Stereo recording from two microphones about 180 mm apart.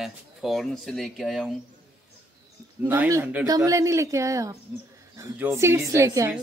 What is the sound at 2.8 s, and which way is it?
A woman's voice, 15° right (ahead or behind).